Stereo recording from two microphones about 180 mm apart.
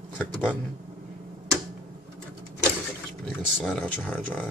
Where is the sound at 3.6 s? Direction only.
10° left (ahead or behind).